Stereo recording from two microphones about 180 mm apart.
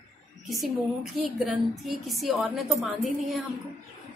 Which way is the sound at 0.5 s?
Centre (ahead or behind).